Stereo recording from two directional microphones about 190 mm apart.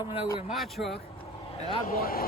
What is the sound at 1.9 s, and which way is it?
Speech, 50° left (ahead or behind).